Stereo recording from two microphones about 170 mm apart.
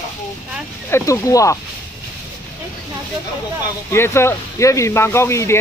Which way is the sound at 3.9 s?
15° left (ahead or behind).